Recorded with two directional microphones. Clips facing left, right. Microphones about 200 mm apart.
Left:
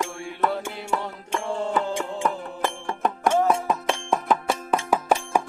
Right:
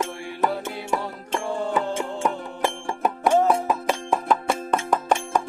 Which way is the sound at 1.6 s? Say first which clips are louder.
Even; centre (ahead or behind).